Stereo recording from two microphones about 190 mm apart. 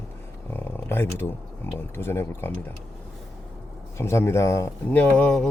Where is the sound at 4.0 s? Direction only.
15° left (ahead or behind).